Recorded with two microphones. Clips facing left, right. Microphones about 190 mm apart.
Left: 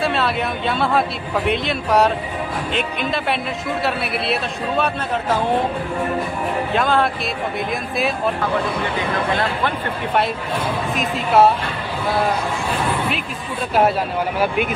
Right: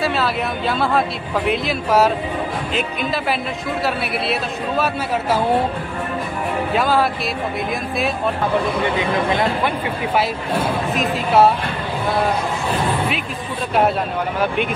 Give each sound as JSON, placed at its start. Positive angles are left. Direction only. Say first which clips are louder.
{"t": 0.0, "sound": "speech", "louder": "even", "side_deg": 0}
{"t": 6.7, "sound": "speech", "louder": "right 1 dB", "side_deg": -5}
{"t": 9.3, "sound": "speech", "louder": "right 2 dB", "side_deg": -15}
{"t": 11.0, "sound": "speech", "louder": "even", "side_deg": 0}